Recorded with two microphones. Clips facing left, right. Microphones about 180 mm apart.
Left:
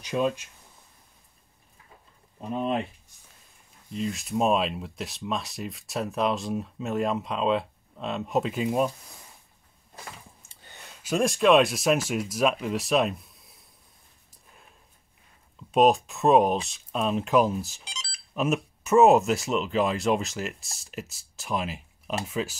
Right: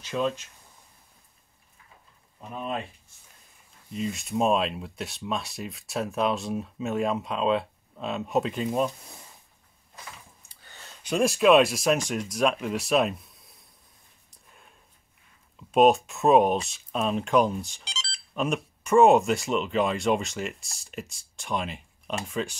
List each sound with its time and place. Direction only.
0.0 s speech: 15° left (ahead or behind)
2.5 s speech: 20° left (ahead or behind)
3.9 s speech: centre (ahead or behind)
10.5 s a sound: 20° left (ahead or behind)
11.0 s speech: centre (ahead or behind)
15.7 s speech: centre (ahead or behind)